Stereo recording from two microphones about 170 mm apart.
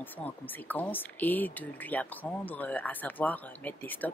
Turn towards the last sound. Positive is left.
turn(degrees=10)  # may be behind; listen again after turning